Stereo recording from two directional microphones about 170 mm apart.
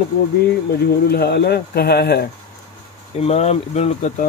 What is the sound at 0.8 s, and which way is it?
Speech, 70° left (ahead or behind).